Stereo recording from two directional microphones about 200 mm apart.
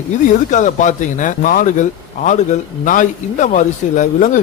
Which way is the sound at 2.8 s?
40° left (ahead or behind).